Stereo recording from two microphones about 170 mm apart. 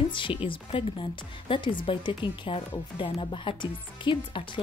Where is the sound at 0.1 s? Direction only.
30° left (ahead or behind).